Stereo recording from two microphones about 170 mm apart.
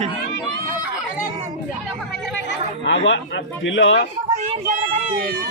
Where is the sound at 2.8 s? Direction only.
90° left.